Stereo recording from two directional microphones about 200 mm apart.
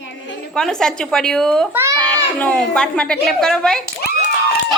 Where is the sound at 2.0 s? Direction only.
5° left (ahead or behind).